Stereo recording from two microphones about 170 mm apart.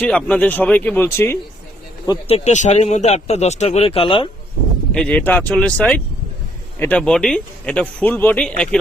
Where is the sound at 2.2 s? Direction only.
40° left (ahead or behind).